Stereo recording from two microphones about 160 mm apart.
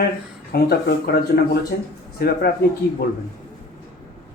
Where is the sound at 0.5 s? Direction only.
90° left.